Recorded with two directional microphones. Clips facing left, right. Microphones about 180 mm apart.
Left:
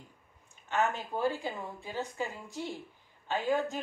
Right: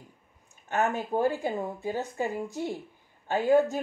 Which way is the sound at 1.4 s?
45° right (ahead or behind).